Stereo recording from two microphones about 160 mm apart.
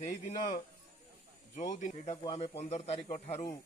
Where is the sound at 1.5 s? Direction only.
50° left (ahead or behind).